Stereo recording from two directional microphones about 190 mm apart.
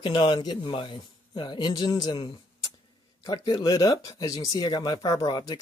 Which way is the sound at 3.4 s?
20° left (ahead or behind).